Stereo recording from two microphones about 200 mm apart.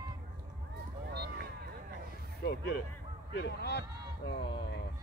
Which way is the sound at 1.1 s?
55° right (ahead or behind).